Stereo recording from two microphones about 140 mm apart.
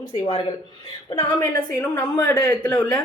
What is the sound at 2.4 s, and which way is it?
Speech, 10° left (ahead or behind).